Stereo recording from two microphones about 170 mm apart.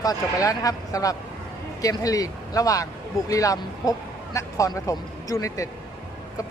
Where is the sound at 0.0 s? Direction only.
20° left (ahead or behind).